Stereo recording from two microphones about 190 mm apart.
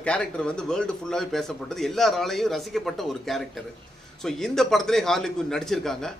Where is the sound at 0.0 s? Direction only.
5° left (ahead or behind).